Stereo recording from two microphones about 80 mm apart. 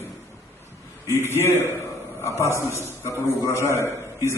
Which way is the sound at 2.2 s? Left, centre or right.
Left.